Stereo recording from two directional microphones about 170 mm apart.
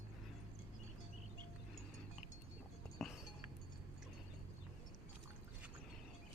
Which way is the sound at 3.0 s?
Centre (ahead or behind).